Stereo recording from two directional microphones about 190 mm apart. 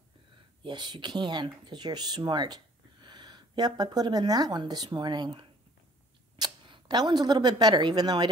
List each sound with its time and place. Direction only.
0.7 s speech: 25° right (ahead or behind)